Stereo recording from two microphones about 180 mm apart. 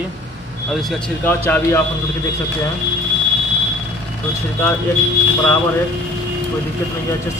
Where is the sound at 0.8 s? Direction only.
5° left (ahead or behind).